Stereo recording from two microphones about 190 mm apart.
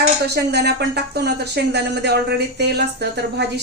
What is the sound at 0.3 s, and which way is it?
A woman's voice, 60° right (ahead or behind).